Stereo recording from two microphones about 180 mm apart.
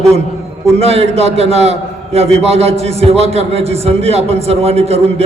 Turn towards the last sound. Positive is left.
turn(degrees=-35)  # may be behind; listen again after turning